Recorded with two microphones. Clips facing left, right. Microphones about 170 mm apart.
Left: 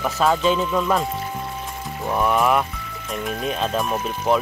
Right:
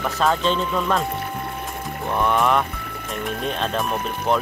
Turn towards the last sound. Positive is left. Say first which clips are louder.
# left 1 dB
turn(degrees=0)  # may be behind; listen again after turning